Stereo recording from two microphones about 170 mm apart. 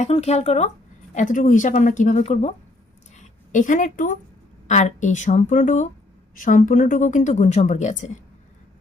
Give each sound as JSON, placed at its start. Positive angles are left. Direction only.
{"t": 0.0, "sound": "a woman's voice", "side_deg": 40}